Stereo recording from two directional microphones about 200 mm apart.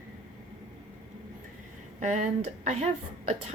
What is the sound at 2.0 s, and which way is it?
Speech, 35° right (ahead or behind).